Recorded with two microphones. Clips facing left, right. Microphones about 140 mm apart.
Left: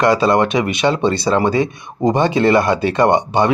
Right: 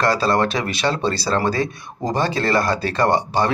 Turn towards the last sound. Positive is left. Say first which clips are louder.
# left 5 dB
turn(degrees=20)  # may be behind; listen again after turning